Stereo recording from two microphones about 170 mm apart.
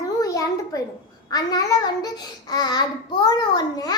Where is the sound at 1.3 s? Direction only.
20° left (ahead or behind).